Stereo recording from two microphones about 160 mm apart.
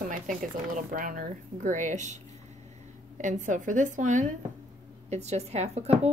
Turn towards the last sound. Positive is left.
turn(degrees=-40)  # may be behind; listen again after turning